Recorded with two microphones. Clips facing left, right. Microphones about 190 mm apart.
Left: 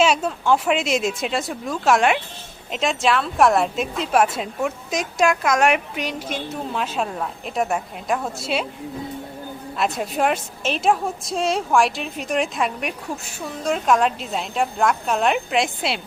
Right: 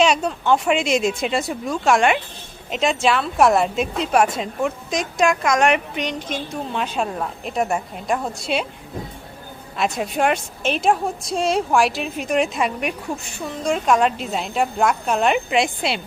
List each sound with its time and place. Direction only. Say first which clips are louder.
0.0 s a woman's voice: right 1 dB; 5° left (ahead or behind)
9.7 s a woman's voice: right 1 dB; centre (ahead or behind)